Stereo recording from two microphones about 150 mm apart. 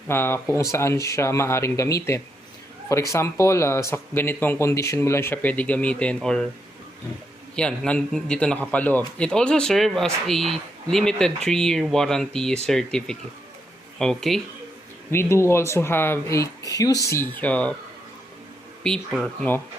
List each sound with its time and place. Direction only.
0.1 s speech: 15° left (ahead or behind)
7.5 s speech: 5° left (ahead or behind)
15.1 s speech: 15° left (ahead or behind)
18.8 s speech: 5° left (ahead or behind)